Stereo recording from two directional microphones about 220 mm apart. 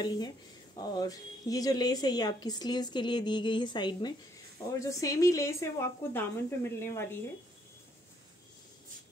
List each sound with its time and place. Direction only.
0.0 s a woman's voice: 20° left (ahead or behind)